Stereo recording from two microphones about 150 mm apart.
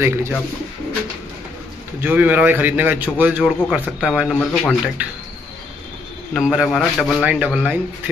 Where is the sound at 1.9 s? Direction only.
10° right (ahead or behind).